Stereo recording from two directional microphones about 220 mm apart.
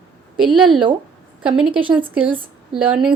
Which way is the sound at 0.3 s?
Centre (ahead or behind).